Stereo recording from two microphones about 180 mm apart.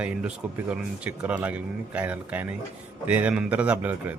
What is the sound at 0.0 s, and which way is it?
Speech, 5° right (ahead or behind).